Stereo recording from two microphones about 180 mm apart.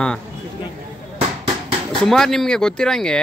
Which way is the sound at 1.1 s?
30° right (ahead or behind).